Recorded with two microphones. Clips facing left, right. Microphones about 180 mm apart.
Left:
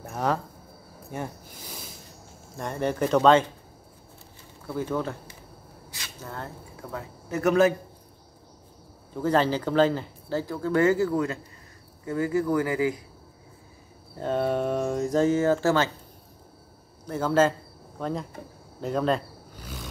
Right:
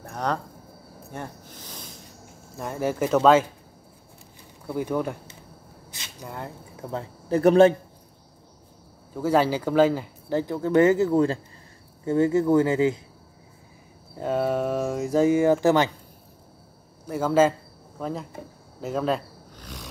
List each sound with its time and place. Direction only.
0.0 s a sound: 5° left (ahead or behind)
1.1 s speech: 10° left (ahead or behind)
2.5 s speech: 5° right (ahead or behind)
4.6 s speech: 15° right (ahead or behind)
6.9 s speech: 30° right (ahead or behind)
9.1 s speech: 10° right (ahead or behind)
10.4 s speech: 20° right (ahead or behind)
14.1 s speech: 10° right (ahead or behind)
17.0 s speech: 10° right (ahead or behind)
19.5 s roaring cats: 5° left (ahead or behind)